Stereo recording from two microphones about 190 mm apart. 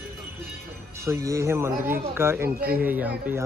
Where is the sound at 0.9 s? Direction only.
15° right (ahead or behind).